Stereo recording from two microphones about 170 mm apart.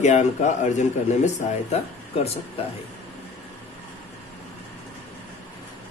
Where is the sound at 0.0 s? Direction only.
45° left (ahead or behind).